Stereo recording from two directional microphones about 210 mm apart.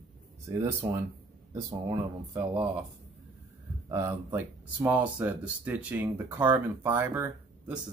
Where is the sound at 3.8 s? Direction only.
15° right (ahead or behind).